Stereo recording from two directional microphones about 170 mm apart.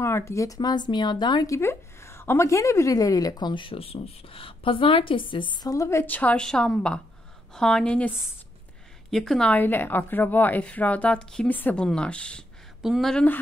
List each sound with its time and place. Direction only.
0.0 s a woman's voice: 15° left (ahead or behind)
9.1 s speech: 5° left (ahead or behind)